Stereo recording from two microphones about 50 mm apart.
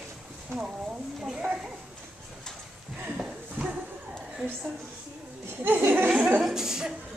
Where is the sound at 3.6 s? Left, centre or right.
Right.